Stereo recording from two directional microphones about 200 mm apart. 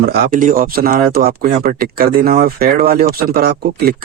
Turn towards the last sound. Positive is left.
turn(degrees=-50)  # may be behind; listen again after turning